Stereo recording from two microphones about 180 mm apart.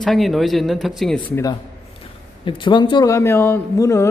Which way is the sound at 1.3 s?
20° left (ahead or behind).